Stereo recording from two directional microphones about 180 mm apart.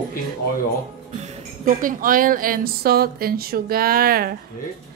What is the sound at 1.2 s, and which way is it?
Speech, 45° right (ahead or behind).